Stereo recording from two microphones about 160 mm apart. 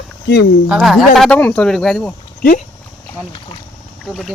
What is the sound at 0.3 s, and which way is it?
Speech, 90° left.